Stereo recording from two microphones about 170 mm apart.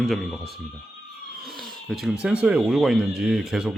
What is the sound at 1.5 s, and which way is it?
Cat, centre (ahead or behind).